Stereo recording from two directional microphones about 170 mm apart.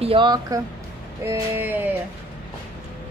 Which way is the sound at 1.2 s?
15° right (ahead or behind).